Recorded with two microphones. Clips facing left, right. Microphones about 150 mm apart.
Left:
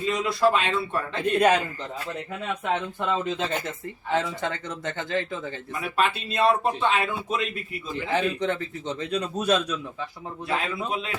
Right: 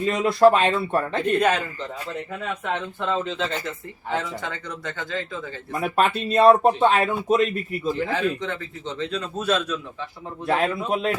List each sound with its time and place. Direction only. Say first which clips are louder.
0.1 s speech: right 6 dB; 50° right (ahead or behind)
1.4 s a man's voice: left 3 dB; 15° left (ahead or behind)
2.6 s a man's voice: left 1 dB; 15° left (ahead or behind)
5.8 s speech: right 4 dB; 45° right (ahead or behind)
8.1 s a man's voice: even; 20° left (ahead or behind)
10.4 s speech: right 6 dB; 50° right (ahead or behind)